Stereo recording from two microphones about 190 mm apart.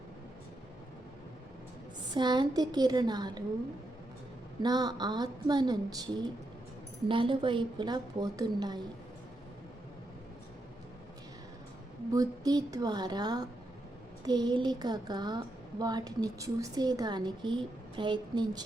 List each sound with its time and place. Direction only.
2.1 s a woman's voice: 25° right (ahead or behind)
4.6 s a woman's voice: 20° right (ahead or behind)
12.1 s a woman's voice: 20° right (ahead or behind)